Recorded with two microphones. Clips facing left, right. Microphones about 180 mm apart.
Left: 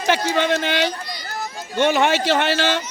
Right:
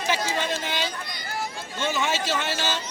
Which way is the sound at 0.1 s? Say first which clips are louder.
Left 8 dB; 70° left (ahead or behind).